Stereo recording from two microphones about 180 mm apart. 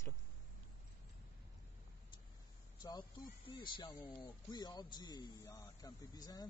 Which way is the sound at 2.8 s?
25° left (ahead or behind).